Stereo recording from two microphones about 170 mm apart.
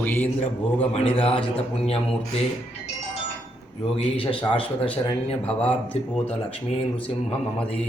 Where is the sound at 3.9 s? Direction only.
30° left (ahead or behind).